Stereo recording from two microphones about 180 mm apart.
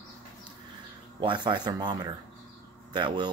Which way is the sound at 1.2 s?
25° right (ahead or behind).